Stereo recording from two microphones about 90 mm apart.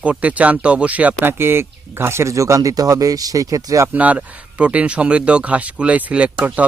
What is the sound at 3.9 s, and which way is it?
Speech, 15° right (ahead or behind).